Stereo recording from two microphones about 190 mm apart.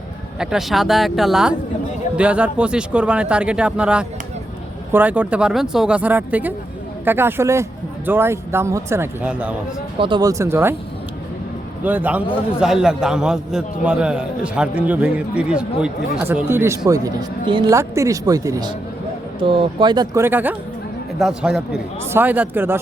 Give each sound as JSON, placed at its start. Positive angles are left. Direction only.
{"t": 0.3, "sound": "a man's voice", "side_deg": 0}
{"t": 10.0, "sound": "speech", "side_deg": -25}
{"t": 11.8, "sound": "a man's voice", "side_deg": -10}